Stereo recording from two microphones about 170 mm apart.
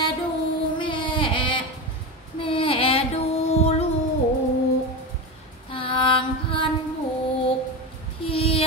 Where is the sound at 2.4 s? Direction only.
30° left (ahead or behind).